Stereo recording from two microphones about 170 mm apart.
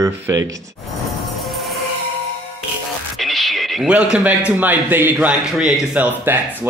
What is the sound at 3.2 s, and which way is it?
A man's voice, centre (ahead or behind).